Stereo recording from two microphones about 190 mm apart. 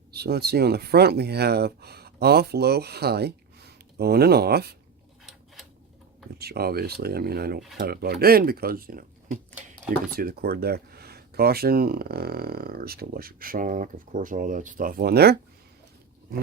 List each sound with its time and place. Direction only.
0.1 s speech: 55° right (ahead or behind)
6.4 s speech: 55° right (ahead or behind)